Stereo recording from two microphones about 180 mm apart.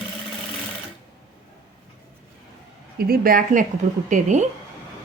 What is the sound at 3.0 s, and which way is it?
Speech, 55° right (ahead or behind).